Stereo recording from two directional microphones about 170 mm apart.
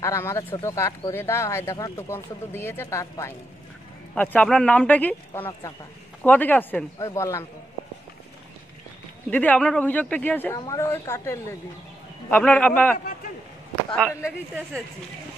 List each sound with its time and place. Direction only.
0.0 s speech: 15° left (ahead or behind)
9.3 s speech: 10° left (ahead or behind)